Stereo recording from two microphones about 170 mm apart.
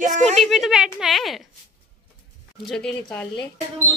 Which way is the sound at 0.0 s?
40° right (ahead or behind).